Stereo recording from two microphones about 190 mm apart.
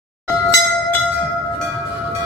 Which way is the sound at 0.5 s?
20° left (ahead or behind).